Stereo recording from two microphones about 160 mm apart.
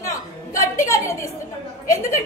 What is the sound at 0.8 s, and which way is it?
Speech, 20° left (ahead or behind).